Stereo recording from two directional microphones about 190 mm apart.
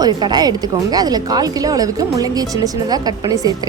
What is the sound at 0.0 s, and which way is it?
A woman's voice, 20° right (ahead or behind).